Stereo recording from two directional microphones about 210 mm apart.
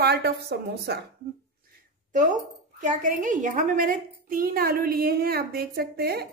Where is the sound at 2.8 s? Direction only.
35° right (ahead or behind).